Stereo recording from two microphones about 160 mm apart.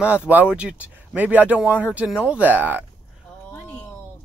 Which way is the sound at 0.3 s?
10° right (ahead or behind).